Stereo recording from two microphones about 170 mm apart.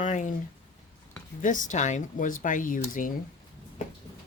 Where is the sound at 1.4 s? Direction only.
50° left (ahead or behind).